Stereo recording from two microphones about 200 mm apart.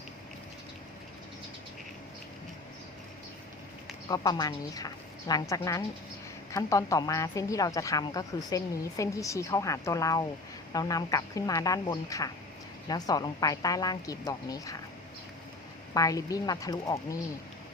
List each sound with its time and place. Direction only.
4.1 s a woman's voice: 20° left (ahead or behind)
16.0 s a woman's voice: 20° left (ahead or behind)